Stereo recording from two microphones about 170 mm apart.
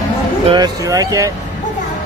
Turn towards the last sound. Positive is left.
turn(degrees=-20)  # may be behind; listen again after turning